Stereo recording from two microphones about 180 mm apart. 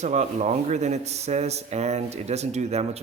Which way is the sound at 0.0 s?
40° right (ahead or behind).